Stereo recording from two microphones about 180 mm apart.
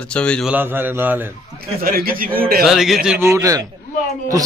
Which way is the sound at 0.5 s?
10° right (ahead or behind).